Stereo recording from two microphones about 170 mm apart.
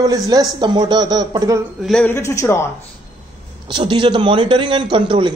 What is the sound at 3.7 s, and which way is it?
Speech, 30° right (ahead or behind).